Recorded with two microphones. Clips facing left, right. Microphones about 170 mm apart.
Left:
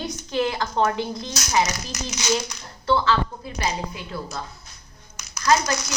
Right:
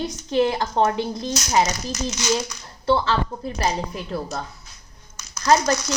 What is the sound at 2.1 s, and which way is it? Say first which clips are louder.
Speech: even; 15° left (ahead or behind).